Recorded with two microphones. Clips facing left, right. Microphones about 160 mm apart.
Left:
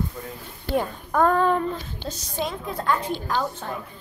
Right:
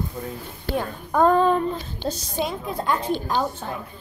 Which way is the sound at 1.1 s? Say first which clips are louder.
Right 2 dB; 20° right (ahead or behind).